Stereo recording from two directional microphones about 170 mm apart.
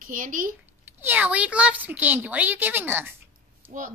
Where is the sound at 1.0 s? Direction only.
10° right (ahead or behind).